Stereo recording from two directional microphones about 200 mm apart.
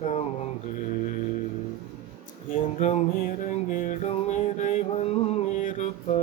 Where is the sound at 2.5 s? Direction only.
35° left (ahead or behind).